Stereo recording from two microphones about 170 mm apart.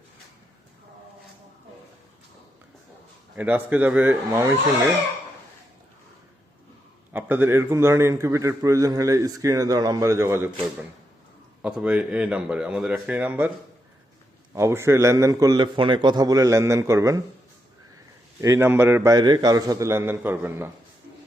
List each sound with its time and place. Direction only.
3.3 s a man's voice: 10° right (ahead or behind)
7.1 s a man's voice: 10° right (ahead or behind)
11.6 s a man's voice: 5° right (ahead or behind)
14.5 s a man's voice: 15° right (ahead or behind)
18.3 s a man's voice: 15° right (ahead or behind)